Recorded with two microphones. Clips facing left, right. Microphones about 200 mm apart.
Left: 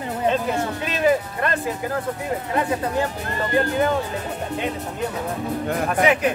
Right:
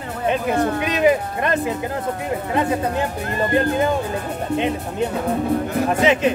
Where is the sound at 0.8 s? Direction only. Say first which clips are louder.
Even; 20° right (ahead or behind).